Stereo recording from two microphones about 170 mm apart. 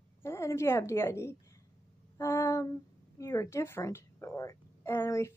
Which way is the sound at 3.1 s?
20° left (ahead or behind).